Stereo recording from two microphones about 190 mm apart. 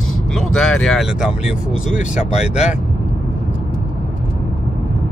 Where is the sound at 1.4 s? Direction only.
35° left (ahead or behind).